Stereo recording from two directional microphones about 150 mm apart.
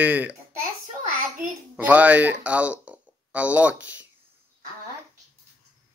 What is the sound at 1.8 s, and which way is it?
Speech, 10° right (ahead or behind).